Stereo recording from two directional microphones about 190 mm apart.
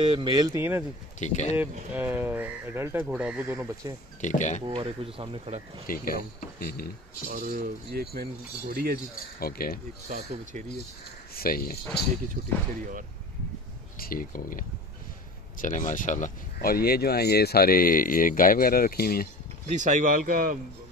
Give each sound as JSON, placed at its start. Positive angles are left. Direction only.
{"t": 0.0, "sound": "speech", "side_deg": -25}
{"t": 1.2, "sound": "speech", "side_deg": 40}
{"t": 1.6, "sound": "speech", "side_deg": -10}
{"t": 4.2, "sound": "speech", "side_deg": 40}
{"t": 4.6, "sound": "speech", "side_deg": -30}
{"t": 5.9, "sound": "speech", "side_deg": 50}
{"t": 7.2, "sound": "speech", "side_deg": -50}
{"t": 9.4, "sound": "speech", "side_deg": 50}
{"t": 10.0, "sound": "speech", "side_deg": -40}
{"t": 11.3, "sound": "speech", "side_deg": 50}
{"t": 12.4, "sound": "speech", "side_deg": -45}
{"t": 13.9, "sound": "speech", "side_deg": 50}
{"t": 19.6, "sound": "speech", "side_deg": -40}